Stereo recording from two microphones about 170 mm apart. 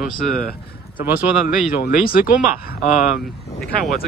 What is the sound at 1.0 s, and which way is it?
Speech, 10° right (ahead or behind).